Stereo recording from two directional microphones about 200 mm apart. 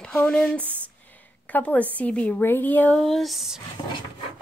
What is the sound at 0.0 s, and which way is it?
Speech, 5° left (ahead or behind).